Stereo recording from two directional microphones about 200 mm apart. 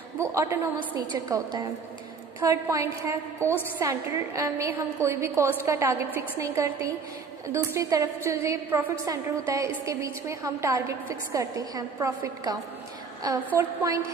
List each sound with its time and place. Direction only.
0.2 s a woman's voice: 15° right (ahead or behind)